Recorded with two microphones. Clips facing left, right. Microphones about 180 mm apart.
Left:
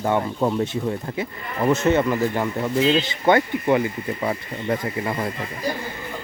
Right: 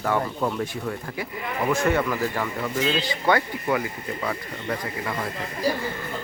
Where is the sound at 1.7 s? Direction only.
20° left (ahead or behind).